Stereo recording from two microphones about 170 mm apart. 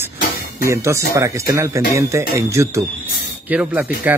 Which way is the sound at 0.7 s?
15° right (ahead or behind).